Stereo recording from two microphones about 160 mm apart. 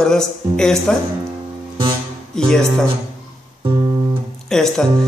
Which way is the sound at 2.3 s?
5° left (ahead or behind).